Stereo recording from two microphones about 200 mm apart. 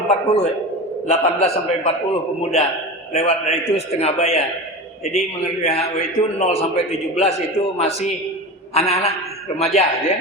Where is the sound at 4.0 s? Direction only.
30° left (ahead or behind).